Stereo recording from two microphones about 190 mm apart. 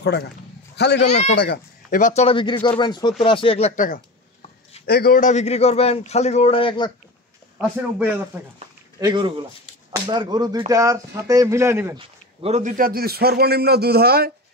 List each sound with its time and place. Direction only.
0.0 s a man's voice: 60° left (ahead or behind)
1.0 s a man's voice: 35° left (ahead or behind)
1.4 s speech: 50° left (ahead or behind)
4.8 s a man's voice: 55° left (ahead or behind); by 6.9 s 30° left (ahead or behind)
9.0 s speech: 20° right (ahead or behind)
12.0 s a man's voice: 30° right (ahead or behind); by 14.3 s 55° right (ahead or behind)